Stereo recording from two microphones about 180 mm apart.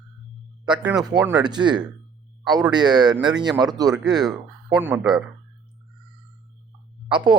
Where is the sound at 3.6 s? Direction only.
20° right (ahead or behind).